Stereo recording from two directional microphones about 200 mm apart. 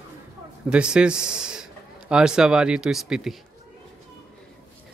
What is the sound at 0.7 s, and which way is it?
Speech, 5° right (ahead or behind).